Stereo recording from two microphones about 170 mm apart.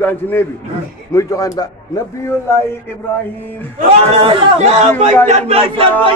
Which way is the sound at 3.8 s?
40° right (ahead or behind).